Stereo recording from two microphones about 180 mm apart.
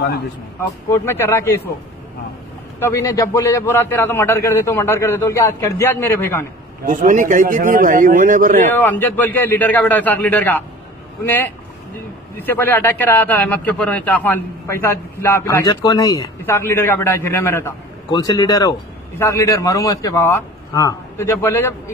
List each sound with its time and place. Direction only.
0.6 s a man's voice: 15° left (ahead or behind)
2.8 s a man's voice: 15° left (ahead or behind)
6.9 s a man's voice: 45° right (ahead or behind)
8.7 s a man's voice: 10° left (ahead or behind)